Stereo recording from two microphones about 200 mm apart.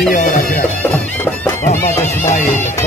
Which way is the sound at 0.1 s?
40° left (ahead or behind).